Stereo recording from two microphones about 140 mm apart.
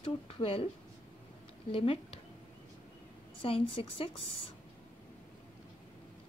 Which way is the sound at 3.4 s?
40° left (ahead or behind).